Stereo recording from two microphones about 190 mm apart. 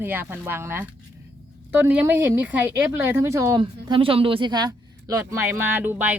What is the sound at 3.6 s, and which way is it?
Speech, 25° right (ahead or behind).